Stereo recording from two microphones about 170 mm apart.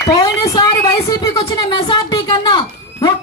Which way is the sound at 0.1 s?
20° left (ahead or behind).